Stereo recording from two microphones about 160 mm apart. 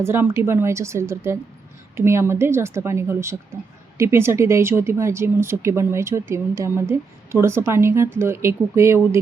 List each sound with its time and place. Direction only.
0.0 s speech: 15° right (ahead or behind)